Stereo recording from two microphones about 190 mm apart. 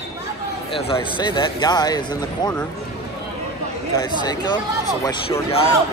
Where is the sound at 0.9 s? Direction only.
25° left (ahead or behind).